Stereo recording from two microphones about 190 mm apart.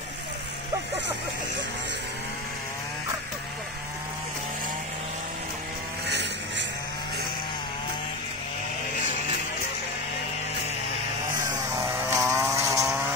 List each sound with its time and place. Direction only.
11.4 s vehicle: 15° right (ahead or behind)